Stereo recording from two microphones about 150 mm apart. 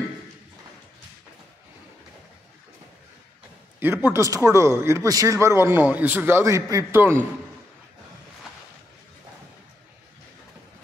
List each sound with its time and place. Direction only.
3.8 s a man's voice: 15° right (ahead or behind)